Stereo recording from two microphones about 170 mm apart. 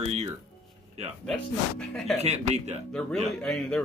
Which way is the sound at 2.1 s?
40° right (ahead or behind).